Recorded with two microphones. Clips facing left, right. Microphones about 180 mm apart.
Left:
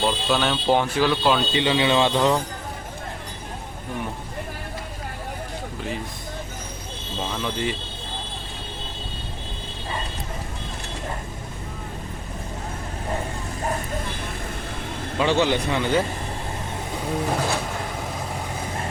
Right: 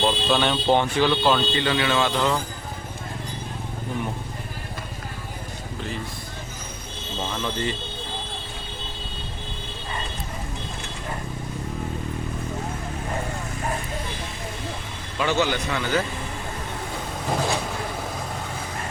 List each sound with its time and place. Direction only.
0.0 s speech: 5° left (ahead or behind)
1.5 s speech: 20° left (ahead or behind)
7.4 s speech: 10° left (ahead or behind)
15.2 s speech: 30° left (ahead or behind)